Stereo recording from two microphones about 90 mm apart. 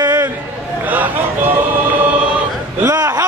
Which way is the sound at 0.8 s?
20° right (ahead or behind).